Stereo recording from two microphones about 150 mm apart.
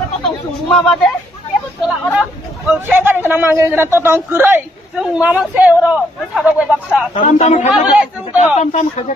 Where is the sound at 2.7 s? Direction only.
15° right (ahead or behind).